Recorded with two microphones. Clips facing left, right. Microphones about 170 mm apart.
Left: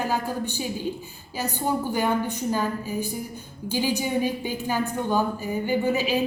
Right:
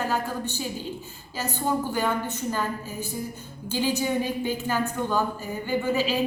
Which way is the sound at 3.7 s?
15° left (ahead or behind).